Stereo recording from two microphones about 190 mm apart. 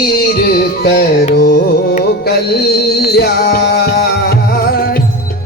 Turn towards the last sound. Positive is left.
turn(degrees=60)  # may be behind; listen again after turning